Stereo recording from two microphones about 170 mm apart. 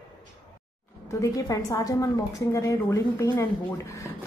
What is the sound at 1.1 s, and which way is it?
A woman's voice, 20° left (ahead or behind).